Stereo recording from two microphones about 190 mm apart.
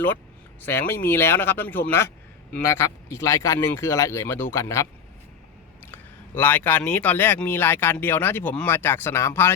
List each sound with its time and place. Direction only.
0.6 s speech: 10° left (ahead or behind)